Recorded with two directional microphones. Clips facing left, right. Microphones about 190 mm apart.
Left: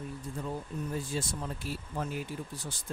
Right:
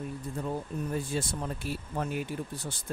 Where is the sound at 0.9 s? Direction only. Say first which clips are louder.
Right 3 dB; 60° right (ahead or behind).